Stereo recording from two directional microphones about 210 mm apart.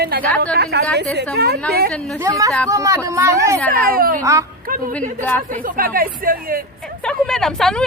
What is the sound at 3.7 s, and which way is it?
Speech, 45° right (ahead or behind).